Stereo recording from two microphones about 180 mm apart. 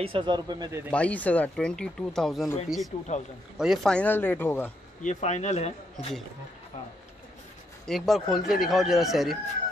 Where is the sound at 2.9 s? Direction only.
40° left (ahead or behind).